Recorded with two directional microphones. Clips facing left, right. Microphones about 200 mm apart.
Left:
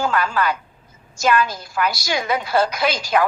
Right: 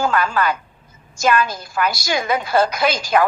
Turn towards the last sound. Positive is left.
turn(degrees=-50)  # may be behind; listen again after turning